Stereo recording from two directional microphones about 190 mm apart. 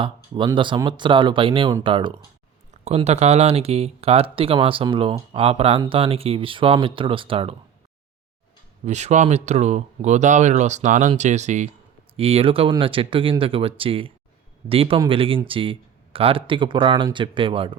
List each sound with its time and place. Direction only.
0.0 s speech: 25° right (ahead or behind)
8.8 s speech: 35° right (ahead or behind)